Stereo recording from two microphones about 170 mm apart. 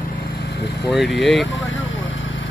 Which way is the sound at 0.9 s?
Centre (ahead or behind).